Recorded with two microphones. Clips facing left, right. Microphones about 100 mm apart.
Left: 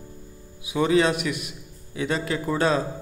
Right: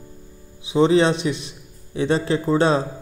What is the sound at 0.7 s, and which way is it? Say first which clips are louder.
A man's voice: right 4 dB; 25° right (ahead or behind).